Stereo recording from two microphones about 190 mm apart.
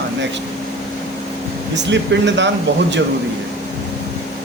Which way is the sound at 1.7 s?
70° right (ahead or behind).